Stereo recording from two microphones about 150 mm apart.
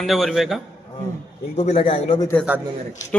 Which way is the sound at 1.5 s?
40° left (ahead or behind).